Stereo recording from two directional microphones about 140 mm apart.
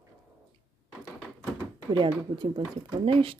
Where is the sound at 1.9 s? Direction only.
35° right (ahead or behind).